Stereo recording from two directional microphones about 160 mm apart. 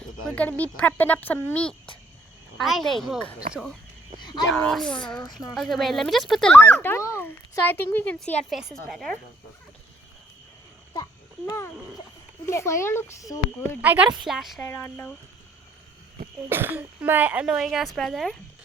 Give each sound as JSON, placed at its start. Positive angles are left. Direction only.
{"t": 0.3, "sound": "speech", "side_deg": 10}
{"t": 10.9, "sound": "a sound", "side_deg": 20}
{"t": 12.5, "sound": "speech", "side_deg": 15}
{"t": 13.8, "sound": "speech", "side_deg": -10}
{"t": 14.6, "sound": "speech", "side_deg": 15}
{"t": 16.5, "sound": "speech", "side_deg": -15}